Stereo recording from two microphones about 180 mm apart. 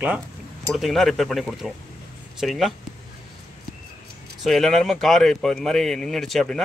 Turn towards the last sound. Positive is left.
turn(degrees=0)  # may be behind; listen again after turning